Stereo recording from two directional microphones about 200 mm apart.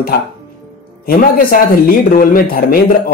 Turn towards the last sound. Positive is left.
turn(degrees=45)  # may be behind; listen again after turning